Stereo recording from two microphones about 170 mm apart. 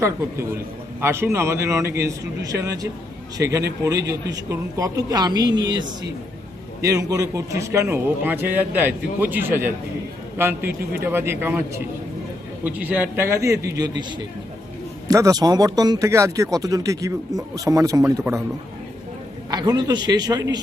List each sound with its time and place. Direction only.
1.0 s a man's voice: 15° right (ahead or behind)
19.5 s speech: 25° right (ahead or behind)